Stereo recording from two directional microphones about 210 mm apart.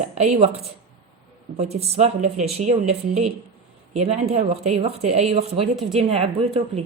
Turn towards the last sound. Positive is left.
turn(degrees=-25)  # may be behind; listen again after turning